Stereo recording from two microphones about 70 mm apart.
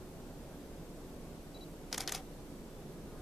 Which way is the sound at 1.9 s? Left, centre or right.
Centre.